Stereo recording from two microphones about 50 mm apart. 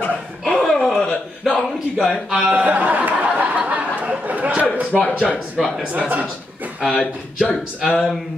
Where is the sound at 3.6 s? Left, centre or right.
Right.